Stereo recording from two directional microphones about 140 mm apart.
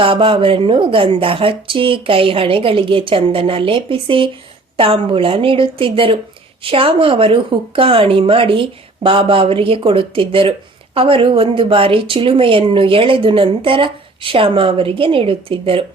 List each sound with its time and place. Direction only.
0.0 s a woman's voice: 40° right (ahead or behind)